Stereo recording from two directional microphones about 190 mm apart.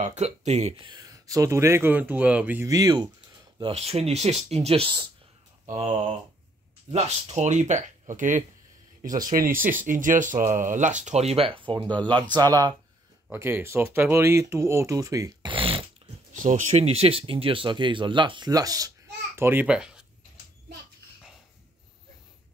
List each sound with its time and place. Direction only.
0.0 s speech: 40° right (ahead or behind)
0.9 s speech: 20° right (ahead or behind)
3.5 s speech: 30° right (ahead or behind); by 20.1 s 5° right (ahead or behind)